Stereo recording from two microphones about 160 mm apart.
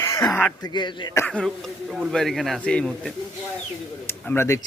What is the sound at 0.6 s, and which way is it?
Speech, 30° left (ahead or behind).